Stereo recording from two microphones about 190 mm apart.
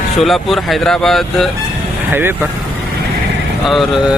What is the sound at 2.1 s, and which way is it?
Speech, 10° right (ahead or behind).